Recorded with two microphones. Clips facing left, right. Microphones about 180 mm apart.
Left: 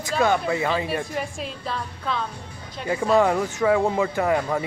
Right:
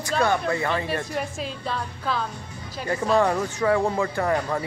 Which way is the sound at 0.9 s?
Centre (ahead or behind).